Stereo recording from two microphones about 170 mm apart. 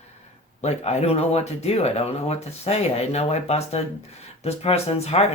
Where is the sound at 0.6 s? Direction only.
40° left (ahead or behind).